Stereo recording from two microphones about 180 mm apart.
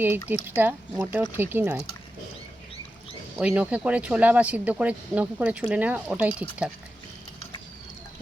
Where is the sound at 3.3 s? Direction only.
5° right (ahead or behind).